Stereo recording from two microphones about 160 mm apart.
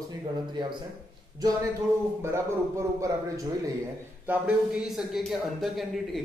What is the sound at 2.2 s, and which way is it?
A man's voice, 20° right (ahead or behind).